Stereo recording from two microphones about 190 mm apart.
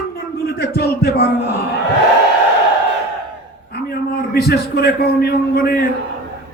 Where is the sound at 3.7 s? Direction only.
55° left (ahead or behind).